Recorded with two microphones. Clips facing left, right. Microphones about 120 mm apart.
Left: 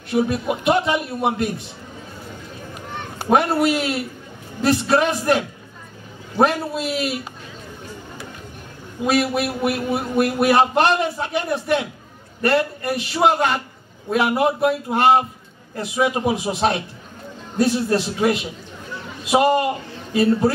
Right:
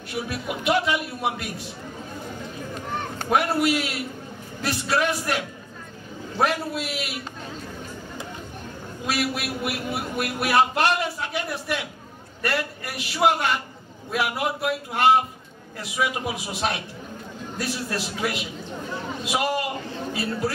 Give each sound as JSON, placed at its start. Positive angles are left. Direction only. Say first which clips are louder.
{"t": 0.1, "sound": "a man's voice", "louder": "left 10 dB", "side_deg": 25}
{"t": 3.3, "sound": "a man's voice", "louder": "left 5 dB", "side_deg": 25}
{"t": 6.4, "sound": "a man's voice", "louder": "left 5 dB", "side_deg": 25}
{"t": 9.0, "sound": "a man's voice", "louder": "left 8 dB", "side_deg": 25}